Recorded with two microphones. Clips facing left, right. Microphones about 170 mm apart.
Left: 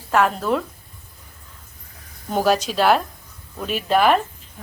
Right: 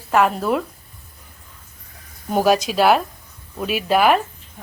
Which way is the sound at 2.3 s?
10° right (ahead or behind).